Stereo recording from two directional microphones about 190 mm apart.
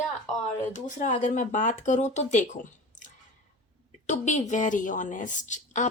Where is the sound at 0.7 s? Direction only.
40° left (ahead or behind).